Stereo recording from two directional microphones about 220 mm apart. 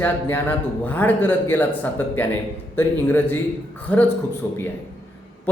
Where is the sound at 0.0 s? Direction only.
10° left (ahead or behind).